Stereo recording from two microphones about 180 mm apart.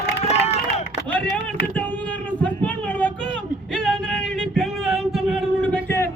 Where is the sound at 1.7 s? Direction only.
10° left (ahead or behind).